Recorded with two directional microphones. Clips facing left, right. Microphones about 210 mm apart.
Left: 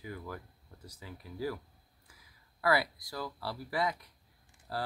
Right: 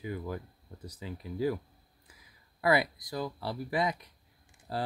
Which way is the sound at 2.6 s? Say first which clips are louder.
Right 3 dB; 20° right (ahead or behind).